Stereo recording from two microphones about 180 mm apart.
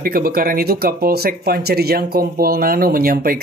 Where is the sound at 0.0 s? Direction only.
55° right (ahead or behind).